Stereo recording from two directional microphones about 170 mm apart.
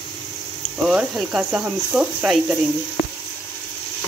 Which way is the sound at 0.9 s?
5° right (ahead or behind).